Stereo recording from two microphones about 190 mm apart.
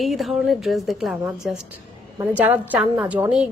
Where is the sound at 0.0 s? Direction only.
Centre (ahead or behind).